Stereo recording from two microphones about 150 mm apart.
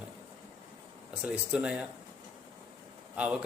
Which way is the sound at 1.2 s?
5° right (ahead or behind).